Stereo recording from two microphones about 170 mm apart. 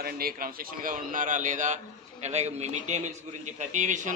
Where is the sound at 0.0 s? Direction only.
60° right (ahead or behind).